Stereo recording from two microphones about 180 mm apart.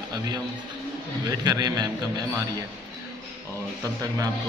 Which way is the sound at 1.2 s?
20° right (ahead or behind).